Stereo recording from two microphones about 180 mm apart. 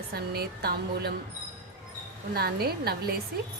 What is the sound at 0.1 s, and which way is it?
Speech, 60° right (ahead or behind).